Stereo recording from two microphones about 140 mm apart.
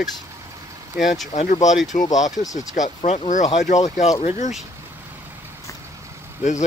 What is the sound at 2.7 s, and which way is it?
Speech, 60° left (ahead or behind).